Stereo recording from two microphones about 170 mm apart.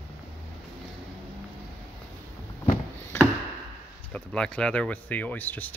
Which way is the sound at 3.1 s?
15° left (ahead or behind).